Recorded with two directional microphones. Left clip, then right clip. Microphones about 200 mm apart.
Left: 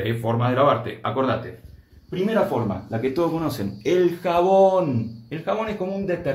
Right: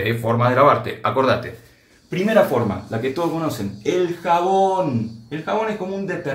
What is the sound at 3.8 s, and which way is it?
Speech, 50° left (ahead or behind).